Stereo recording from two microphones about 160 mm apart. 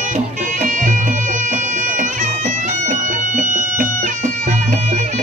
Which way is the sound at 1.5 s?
50° right (ahead or behind).